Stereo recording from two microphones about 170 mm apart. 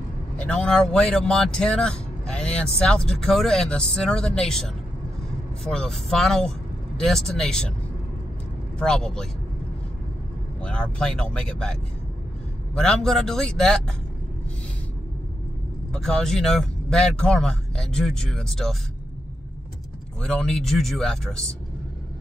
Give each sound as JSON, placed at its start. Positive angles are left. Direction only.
{"t": 0.4, "sound": "speech", "side_deg": 5}
{"t": 8.7, "sound": "speech", "side_deg": 5}
{"t": 10.6, "sound": "speech", "side_deg": 5}
{"t": 12.7, "sound": "speech", "side_deg": 5}
{"t": 15.9, "sound": "speech", "side_deg": 5}
{"t": 20.2, "sound": "speech", "side_deg": 5}